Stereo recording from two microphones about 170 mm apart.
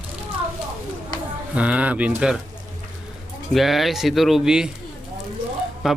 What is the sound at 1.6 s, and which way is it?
Speech, 10° right (ahead or behind).